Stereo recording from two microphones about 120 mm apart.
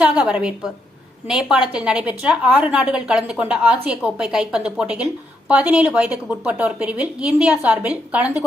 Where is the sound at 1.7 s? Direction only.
10° right (ahead or behind).